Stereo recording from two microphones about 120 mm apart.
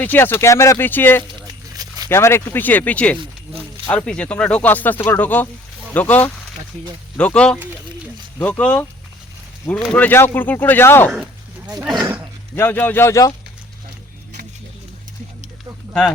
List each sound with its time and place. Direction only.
0.0 s speech: 15° left (ahead or behind)
1.7 s zipper: 30° right (ahead or behind)
2.0 s speech: 20° left (ahead or behind)
11.1 s a sound: 5° right (ahead or behind)
12.0 s a sound: 20° right (ahead or behind)
12.5 s speech: 15° left (ahead or behind)